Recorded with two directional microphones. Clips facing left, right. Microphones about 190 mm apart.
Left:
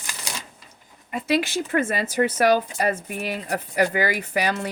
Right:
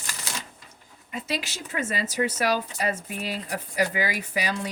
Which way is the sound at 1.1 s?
60° left (ahead or behind).